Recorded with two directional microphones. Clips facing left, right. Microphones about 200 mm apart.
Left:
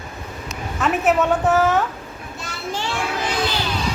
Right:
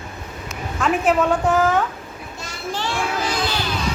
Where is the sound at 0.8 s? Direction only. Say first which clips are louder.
Even; 5° left (ahead or behind).